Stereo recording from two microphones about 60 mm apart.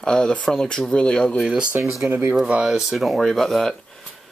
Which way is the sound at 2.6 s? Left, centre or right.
Centre.